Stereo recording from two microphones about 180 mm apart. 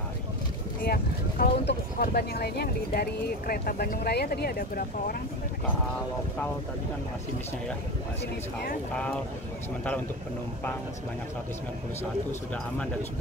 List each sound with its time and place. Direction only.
0.8 s speech: 55° left (ahead or behind)
8.9 s speech: 5° left (ahead or behind)
12.0 s speech: 15° left (ahead or behind)